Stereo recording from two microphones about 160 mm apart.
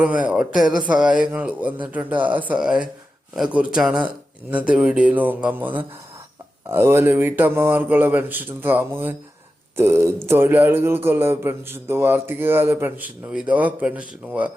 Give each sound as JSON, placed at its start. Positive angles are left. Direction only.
{"t": 0.0, "sound": "a man's voice", "side_deg": -10}